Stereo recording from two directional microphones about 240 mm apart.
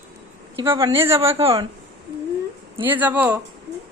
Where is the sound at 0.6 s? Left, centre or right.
Centre.